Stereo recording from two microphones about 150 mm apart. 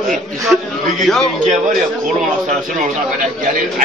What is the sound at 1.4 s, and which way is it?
Speech, 60° right (ahead or behind).